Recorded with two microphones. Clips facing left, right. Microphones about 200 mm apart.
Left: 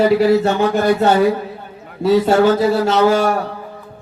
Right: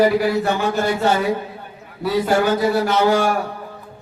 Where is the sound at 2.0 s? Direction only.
25° left (ahead or behind).